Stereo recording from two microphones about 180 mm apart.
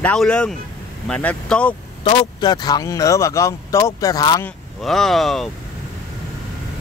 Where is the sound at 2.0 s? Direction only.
25° left (ahead or behind).